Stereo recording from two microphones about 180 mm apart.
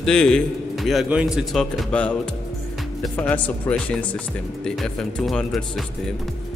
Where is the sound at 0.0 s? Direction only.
5° left (ahead or behind).